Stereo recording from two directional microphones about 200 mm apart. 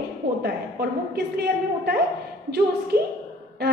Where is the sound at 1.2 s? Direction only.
55° right (ahead or behind).